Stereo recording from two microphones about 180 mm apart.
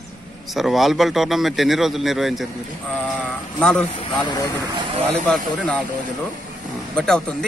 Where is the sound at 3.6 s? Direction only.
5° left (ahead or behind).